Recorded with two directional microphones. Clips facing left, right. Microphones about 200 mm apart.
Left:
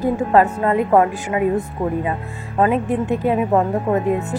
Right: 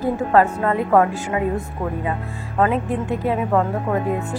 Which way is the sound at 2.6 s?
20° left (ahead or behind).